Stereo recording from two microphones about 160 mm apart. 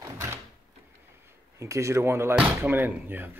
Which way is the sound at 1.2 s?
20° right (ahead or behind).